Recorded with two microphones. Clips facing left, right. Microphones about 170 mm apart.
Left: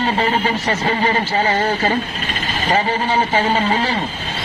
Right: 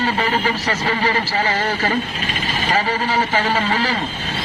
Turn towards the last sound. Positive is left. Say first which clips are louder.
# left 2 dB
turn(degrees=30)  # may be behind; listen again after turning